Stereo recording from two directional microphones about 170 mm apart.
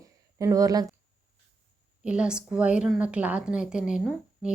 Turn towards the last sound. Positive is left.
turn(degrees=-5)  # may be behind; listen again after turning